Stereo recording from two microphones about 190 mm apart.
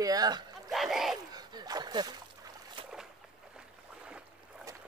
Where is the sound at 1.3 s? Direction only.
20° right (ahead or behind).